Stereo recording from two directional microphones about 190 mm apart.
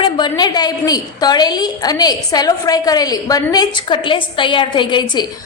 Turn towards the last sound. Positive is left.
turn(degrees=25)  # may be behind; listen again after turning